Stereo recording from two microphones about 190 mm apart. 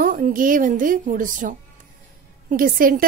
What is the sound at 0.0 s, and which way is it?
A woman's voice, 45° right (ahead or behind).